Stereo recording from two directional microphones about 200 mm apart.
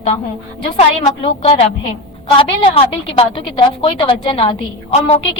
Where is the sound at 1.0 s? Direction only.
30° left (ahead or behind).